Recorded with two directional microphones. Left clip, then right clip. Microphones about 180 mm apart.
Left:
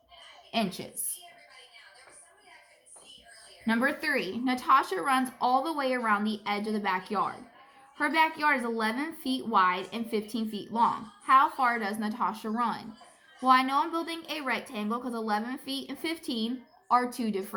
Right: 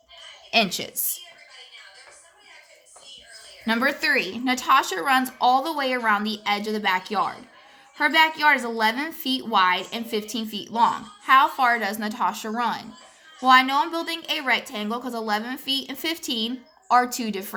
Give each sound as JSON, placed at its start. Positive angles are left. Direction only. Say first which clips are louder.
{"t": 0.5, "sound": "a woman's voice", "louder": "right 10 dB", "side_deg": -30}
{"t": 3.7, "sound": "a woman's voice", "louder": "right 6 dB", "side_deg": -25}